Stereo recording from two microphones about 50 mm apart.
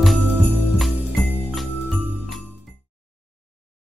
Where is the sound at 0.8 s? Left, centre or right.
Centre.